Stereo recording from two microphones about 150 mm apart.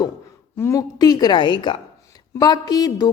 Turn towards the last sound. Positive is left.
turn(degrees=25)  # may be behind; listen again after turning